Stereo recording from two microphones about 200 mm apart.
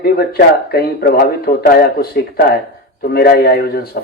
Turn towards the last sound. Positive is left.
turn(degrees=50)  # may be behind; listen again after turning